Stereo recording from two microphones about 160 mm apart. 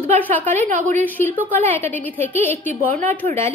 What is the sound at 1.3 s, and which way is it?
A woman's voice, 10° left (ahead or behind).